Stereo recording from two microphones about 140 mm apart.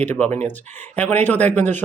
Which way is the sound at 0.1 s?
15° left (ahead or behind).